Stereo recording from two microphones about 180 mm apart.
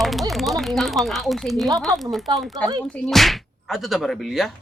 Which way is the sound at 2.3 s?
25° right (ahead or behind).